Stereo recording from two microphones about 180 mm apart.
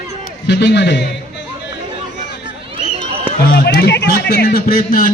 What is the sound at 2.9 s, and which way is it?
Run, 30° right (ahead or behind).